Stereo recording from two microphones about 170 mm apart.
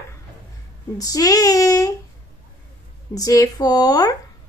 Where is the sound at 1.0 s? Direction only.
20° left (ahead or behind).